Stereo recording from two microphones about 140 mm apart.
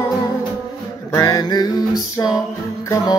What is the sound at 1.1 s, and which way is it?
Music, 25° left (ahead or behind).